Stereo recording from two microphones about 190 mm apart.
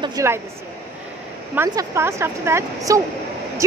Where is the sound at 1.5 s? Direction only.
15° right (ahead or behind).